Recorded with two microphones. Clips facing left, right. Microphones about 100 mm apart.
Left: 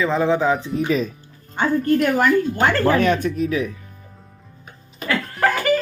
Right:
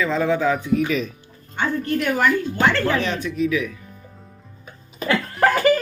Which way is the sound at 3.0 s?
50° left (ahead or behind).